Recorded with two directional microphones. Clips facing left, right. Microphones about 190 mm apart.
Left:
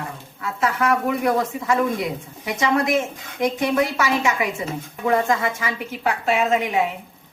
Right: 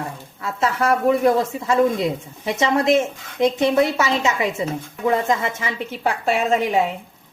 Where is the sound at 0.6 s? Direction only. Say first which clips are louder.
Right 2 dB; 30° right (ahead or behind).